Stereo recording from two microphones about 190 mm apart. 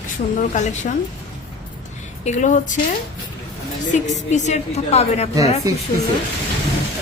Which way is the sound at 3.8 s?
40° left (ahead or behind).